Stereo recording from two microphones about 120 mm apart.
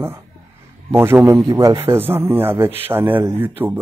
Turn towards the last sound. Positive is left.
turn(degrees=-15)  # may be behind; listen again after turning